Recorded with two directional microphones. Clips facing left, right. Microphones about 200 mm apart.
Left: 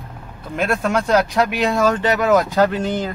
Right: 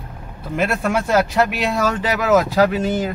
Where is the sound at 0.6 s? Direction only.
5° right (ahead or behind).